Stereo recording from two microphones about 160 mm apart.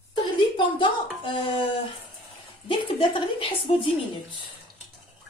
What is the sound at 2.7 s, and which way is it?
A woman's voice, 30° left (ahead or behind).